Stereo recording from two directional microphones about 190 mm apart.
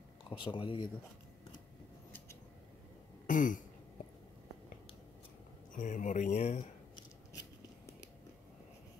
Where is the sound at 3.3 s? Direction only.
45° left (ahead or behind).